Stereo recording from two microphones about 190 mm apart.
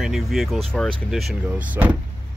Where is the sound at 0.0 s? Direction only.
Centre (ahead or behind).